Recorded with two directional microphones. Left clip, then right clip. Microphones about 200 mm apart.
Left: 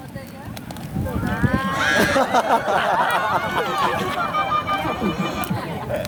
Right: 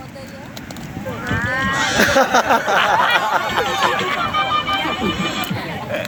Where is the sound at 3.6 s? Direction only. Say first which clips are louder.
Right 3 dB; 55° left (ahead or behind).